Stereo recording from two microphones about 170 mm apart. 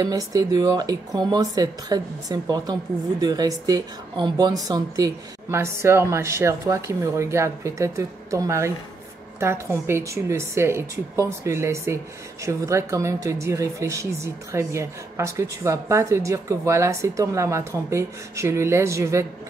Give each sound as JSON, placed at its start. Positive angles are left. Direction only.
{"t": 0.0, "sound": "speech", "side_deg": -20}